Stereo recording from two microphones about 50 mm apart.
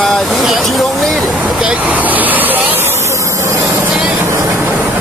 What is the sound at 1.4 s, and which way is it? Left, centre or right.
Vehicle, right.